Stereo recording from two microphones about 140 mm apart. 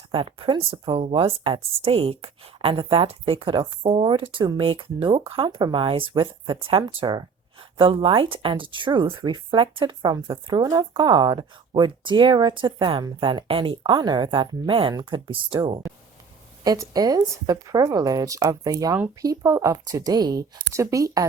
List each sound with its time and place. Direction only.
0.1 s speech: 40° right (ahead or behind)
16.6 s speech: 25° right (ahead or behind)